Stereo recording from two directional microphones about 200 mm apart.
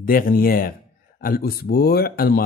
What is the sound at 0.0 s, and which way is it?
Speech, 45° left (ahead or behind).